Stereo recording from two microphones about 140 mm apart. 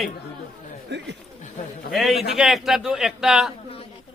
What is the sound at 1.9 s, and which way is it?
A man's voice, centre (ahead or behind).